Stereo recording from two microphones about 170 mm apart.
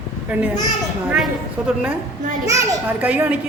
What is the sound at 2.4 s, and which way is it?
Speech, 20° right (ahead or behind).